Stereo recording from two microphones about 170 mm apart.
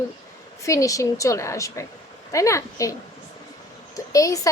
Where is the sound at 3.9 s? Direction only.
20° left (ahead or behind).